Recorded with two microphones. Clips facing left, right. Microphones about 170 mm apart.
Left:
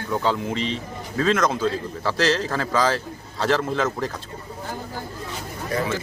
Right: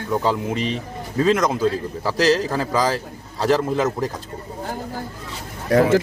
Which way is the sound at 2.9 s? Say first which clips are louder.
Right 1 dB; 40° right (ahead or behind).